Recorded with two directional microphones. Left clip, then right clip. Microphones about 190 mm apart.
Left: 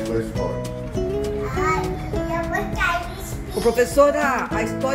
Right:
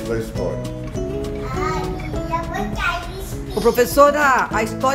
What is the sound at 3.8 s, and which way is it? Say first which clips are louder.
Speech: right 3 dB; 15° right (ahead or behind).